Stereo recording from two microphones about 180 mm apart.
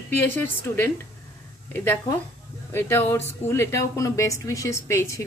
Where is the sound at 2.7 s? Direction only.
15° left (ahead or behind).